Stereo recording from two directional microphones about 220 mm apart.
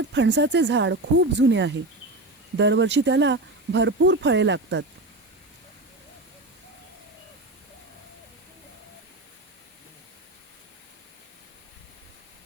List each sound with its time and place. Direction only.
0.1 s speech: 50° right (ahead or behind)